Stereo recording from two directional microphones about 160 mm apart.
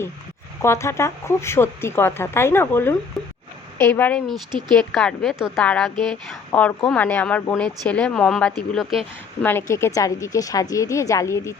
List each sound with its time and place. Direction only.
0.6 s speech: 15° left (ahead or behind)
3.2 s a sound: centre (ahead or behind)
3.8 s a woman's voice: 10° left (ahead or behind)
9.4 s a woman's voice: 15° left (ahead or behind)